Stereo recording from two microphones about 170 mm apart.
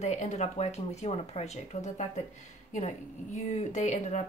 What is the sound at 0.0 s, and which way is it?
Speech, 40° left (ahead or behind).